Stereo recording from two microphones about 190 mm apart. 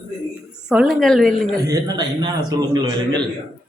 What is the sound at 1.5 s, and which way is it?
A man's voice, 20° right (ahead or behind).